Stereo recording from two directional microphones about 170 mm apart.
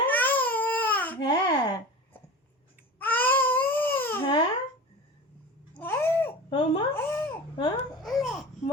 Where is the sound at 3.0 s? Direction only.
10° left (ahead or behind).